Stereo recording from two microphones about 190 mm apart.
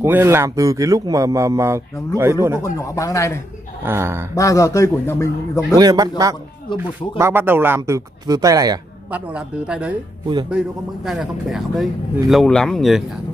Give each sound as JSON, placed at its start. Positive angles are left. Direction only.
{"t": 0.0, "sound": "speech", "side_deg": -15}
{"t": 2.6, "sound": "a man's voice", "side_deg": 15}
{"t": 3.8, "sound": "speech", "side_deg": -15}
{"t": 4.4, "sound": "a man's voice", "side_deg": 15}
{"t": 5.8, "sound": "speech", "side_deg": -20}
{"t": 9.1, "sound": "speech", "side_deg": -5}
{"t": 11.1, "sound": "speech", "side_deg": 0}